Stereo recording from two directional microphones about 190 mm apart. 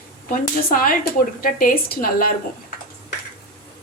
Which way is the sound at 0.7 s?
50° left (ahead or behind).